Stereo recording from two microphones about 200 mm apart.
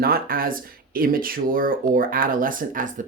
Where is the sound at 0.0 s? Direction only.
45° right (ahead or behind).